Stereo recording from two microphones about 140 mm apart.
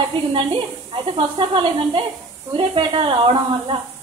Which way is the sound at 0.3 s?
40° right (ahead or behind).